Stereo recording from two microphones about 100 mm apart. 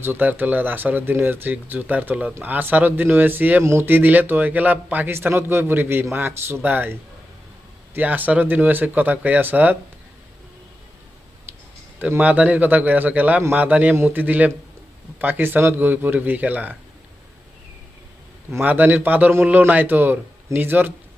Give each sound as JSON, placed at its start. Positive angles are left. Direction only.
{"t": 0.0, "sound": "a man's voice", "side_deg": -20}
{"t": 7.9, "sound": "a man's voice", "side_deg": -15}
{"t": 11.5, "sound": "a sound", "side_deg": -20}
{"t": 11.9, "sound": "a man's voice", "side_deg": -15}
{"t": 18.6, "sound": "a man's voice", "side_deg": -15}